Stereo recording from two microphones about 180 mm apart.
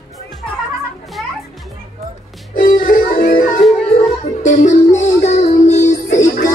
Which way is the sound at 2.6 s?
50° left (ahead or behind).